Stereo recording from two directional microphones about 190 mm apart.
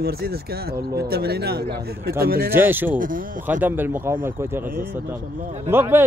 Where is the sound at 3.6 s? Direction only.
10° right (ahead or behind).